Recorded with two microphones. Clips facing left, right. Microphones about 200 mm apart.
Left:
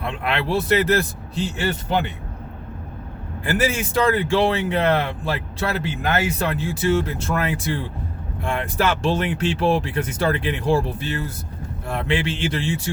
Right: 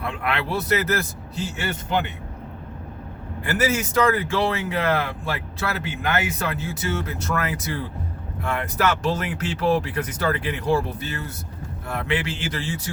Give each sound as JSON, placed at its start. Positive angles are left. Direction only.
{"t": 0.0, "sound": "speech", "side_deg": 25}
{"t": 3.4, "sound": "speech", "side_deg": 30}